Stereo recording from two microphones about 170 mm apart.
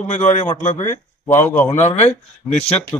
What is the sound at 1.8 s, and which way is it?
Speech, 40° left (ahead or behind).